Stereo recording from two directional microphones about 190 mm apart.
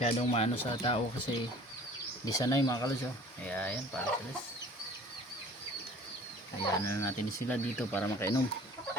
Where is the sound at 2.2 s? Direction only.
20° left (ahead or behind).